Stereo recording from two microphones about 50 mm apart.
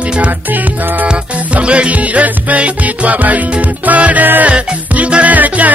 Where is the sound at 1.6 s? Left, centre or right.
Right.